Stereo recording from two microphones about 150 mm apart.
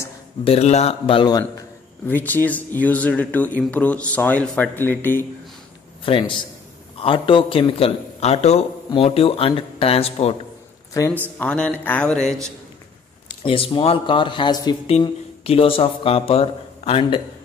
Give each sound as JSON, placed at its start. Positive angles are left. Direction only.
{"t": 0.4, "sound": "a man's voice", "side_deg": 40}
{"t": 2.0, "sound": "speech", "side_deg": 10}
{"t": 6.0, "sound": "a man's voice", "side_deg": 35}
{"t": 10.9, "sound": "speech", "side_deg": 20}
{"t": 11.3, "sound": "speech", "side_deg": 5}
{"t": 13.4, "sound": "a man's voice", "side_deg": 35}
{"t": 14.9, "sound": "speech", "side_deg": 40}